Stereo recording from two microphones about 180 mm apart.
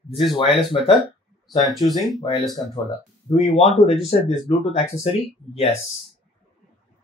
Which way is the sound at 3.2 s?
35° left (ahead or behind).